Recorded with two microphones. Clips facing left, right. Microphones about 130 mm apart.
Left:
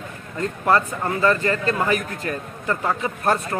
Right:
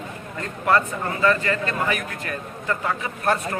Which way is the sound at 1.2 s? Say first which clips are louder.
Left 1 dB; 35° left (ahead or behind).